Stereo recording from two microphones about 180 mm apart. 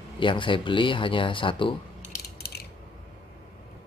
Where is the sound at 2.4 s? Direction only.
60° left (ahead or behind).